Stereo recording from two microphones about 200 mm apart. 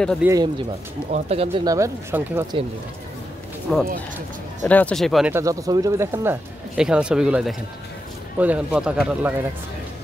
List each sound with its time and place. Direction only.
0.2 s speech: 15° right (ahead or behind)
1.1 s speech: 30° right (ahead or behind)
1.7 s speech: 15° right (ahead or behind)
3.7 s speech: 5° left (ahead or behind)
5.3 s speech: 15° right (ahead or behind)